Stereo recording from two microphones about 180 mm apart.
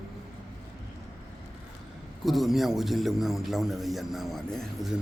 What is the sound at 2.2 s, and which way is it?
A man's voice, centre (ahead or behind).